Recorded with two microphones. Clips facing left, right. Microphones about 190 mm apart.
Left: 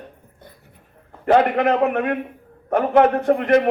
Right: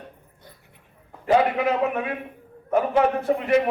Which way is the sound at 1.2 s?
55° left (ahead or behind).